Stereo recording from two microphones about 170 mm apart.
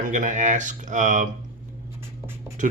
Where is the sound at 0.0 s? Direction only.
50° right (ahead or behind).